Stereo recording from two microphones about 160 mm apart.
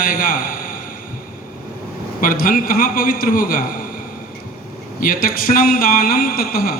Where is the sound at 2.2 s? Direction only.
60° left (ahead or behind).